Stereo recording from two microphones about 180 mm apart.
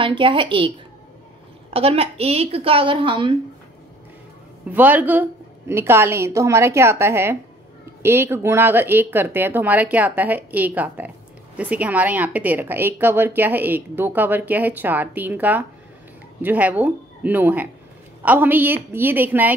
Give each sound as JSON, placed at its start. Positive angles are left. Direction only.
{"t": 0.0, "sound": "a woman's voice", "side_deg": -30}
{"t": 4.6, "sound": "a woman's voice", "side_deg": -10}